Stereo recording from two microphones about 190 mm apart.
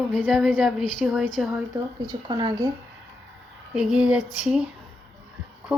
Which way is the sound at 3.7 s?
5° right (ahead or behind).